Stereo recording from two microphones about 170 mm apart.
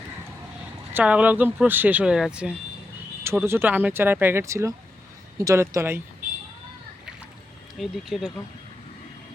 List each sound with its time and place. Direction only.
0.9 s speech: 10° right (ahead or behind)
7.8 s speech: centre (ahead or behind)